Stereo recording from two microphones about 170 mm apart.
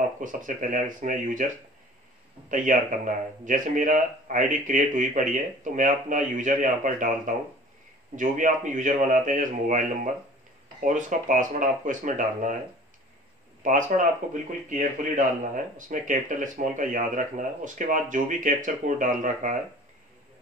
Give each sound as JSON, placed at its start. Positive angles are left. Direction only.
{"t": 0.2, "sound": "speech", "side_deg": -50}
{"t": 2.5, "sound": "speech", "side_deg": -50}
{"t": 13.6, "sound": "speech", "side_deg": -50}